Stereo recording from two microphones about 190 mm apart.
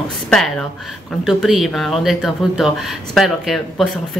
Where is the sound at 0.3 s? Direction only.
5° left (ahead or behind).